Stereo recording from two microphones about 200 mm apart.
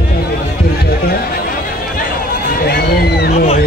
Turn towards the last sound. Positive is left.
turn(degrees=55)  # may be behind; listen again after turning